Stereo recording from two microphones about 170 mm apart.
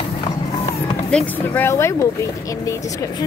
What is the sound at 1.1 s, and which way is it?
Speech, 10° left (ahead or behind).